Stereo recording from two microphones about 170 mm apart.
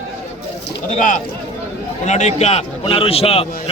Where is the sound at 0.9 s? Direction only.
50° left (ahead or behind).